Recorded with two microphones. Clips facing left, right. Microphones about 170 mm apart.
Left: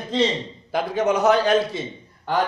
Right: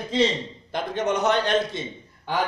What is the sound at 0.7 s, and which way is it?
A man's voice, 5° left (ahead or behind).